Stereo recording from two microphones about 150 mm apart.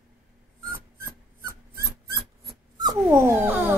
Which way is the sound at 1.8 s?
90° right.